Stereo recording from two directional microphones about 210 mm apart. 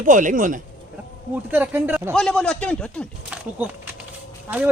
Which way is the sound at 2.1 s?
5° left (ahead or behind).